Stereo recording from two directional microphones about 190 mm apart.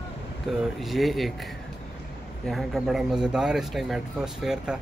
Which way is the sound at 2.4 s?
Centre (ahead or behind).